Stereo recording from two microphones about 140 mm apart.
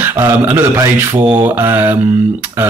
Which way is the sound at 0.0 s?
15° right (ahead or behind).